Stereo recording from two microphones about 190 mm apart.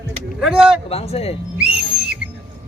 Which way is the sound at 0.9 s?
30° left (ahead or behind).